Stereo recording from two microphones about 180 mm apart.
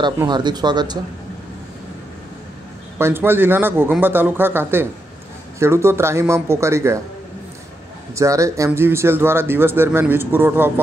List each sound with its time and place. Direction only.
0.0 s speech: 25° right (ahead or behind)
3.0 s a man's voice: 15° right (ahead or behind)
8.1 s a man's voice: 15° right (ahead or behind)